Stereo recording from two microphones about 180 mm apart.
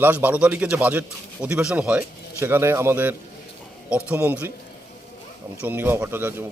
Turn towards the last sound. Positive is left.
turn(degrees=-10)  # may be behind; listen again after turning